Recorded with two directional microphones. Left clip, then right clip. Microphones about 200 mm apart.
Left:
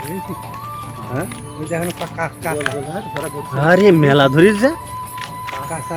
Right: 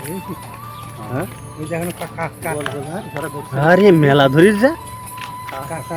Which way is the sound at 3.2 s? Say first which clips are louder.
Right 1 dB; 15° right (ahead or behind).